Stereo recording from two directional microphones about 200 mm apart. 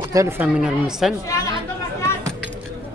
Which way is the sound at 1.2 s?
15° left (ahead or behind).